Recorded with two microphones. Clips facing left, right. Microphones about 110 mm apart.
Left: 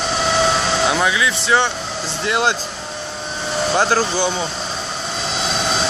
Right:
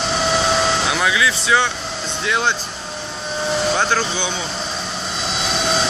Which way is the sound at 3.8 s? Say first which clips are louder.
Left 3 dB; 35° left (ahead or behind).